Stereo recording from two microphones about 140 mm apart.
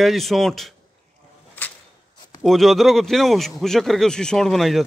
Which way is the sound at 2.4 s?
Centre (ahead or behind).